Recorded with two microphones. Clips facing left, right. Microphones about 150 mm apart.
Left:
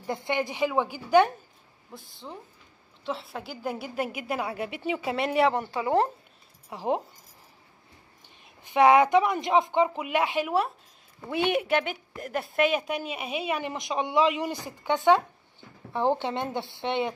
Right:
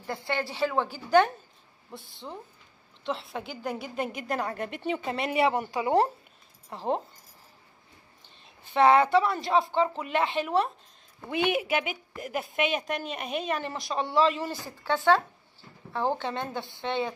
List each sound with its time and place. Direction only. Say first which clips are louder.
0.0 s a woman's voice: left 3 dB; 20° left (ahead or behind)
1.9 s a woman's voice: right 1 dB; centre (ahead or behind); by 5.9 s 15° right (ahead or behind)
6.7 s speech: left 1 dB; 10° left (ahead or behind)
8.7 s a woman's voice: left 2 dB; 15° left (ahead or behind)